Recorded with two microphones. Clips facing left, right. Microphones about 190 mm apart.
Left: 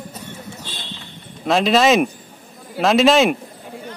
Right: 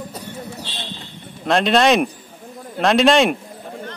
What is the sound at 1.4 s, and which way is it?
Speech, centre (ahead or behind).